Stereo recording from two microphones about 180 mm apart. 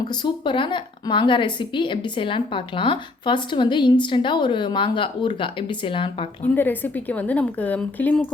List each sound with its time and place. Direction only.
0.1 s speech: 25° left (ahead or behind)
6.5 s a woman's voice: 10° left (ahead or behind)